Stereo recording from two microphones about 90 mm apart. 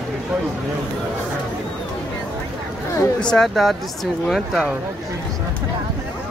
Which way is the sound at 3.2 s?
5° left (ahead or behind).